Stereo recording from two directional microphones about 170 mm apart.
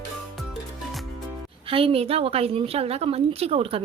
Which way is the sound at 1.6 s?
35° right (ahead or behind).